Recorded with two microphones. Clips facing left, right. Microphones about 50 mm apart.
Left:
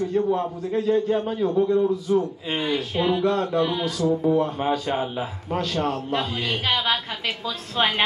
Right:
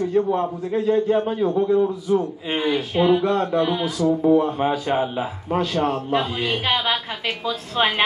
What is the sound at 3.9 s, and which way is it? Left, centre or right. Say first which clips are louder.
Speech: right 3 dB; right.